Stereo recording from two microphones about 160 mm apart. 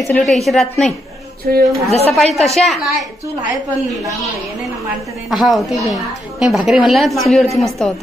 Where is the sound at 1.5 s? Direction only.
70° right (ahead or behind).